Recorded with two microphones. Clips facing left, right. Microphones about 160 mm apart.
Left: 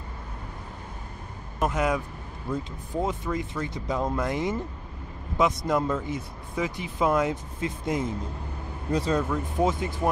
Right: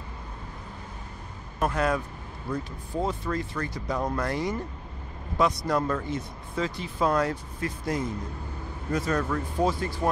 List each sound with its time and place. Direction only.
1.6 s speech: 15° left (ahead or behind)
5.7 s speech: 15° left (ahead or behind)
9.2 s speech: 15° left (ahead or behind)